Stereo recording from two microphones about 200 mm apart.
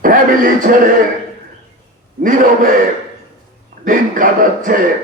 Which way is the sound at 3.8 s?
40° right (ahead or behind).